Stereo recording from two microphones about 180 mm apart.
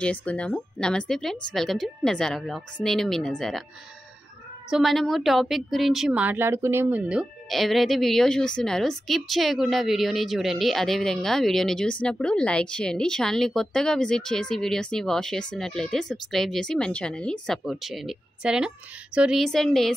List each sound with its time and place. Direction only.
0.0 s a woman's voice: 5° left (ahead or behind)
4.6 s a woman's voice: centre (ahead or behind)